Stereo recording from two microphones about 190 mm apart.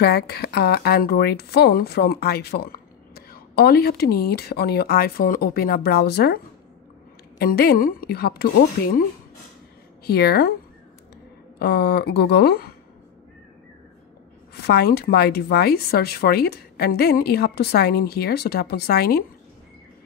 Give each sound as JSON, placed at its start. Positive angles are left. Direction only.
{"t": 0.0, "sound": "a woman's voice", "side_deg": 55}
{"t": 10.0, "sound": "speech", "side_deg": 55}
{"t": 11.5, "sound": "speech", "side_deg": 60}
{"t": 14.5, "sound": "speech", "side_deg": 60}